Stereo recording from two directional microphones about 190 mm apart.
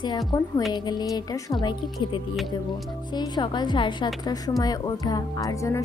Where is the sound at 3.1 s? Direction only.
20° left (ahead or behind).